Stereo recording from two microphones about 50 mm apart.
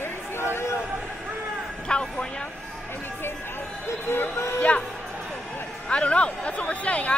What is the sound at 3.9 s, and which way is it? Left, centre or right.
Speech, left.